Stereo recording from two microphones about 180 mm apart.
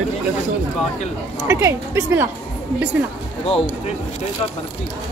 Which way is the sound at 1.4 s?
15° right (ahead or behind).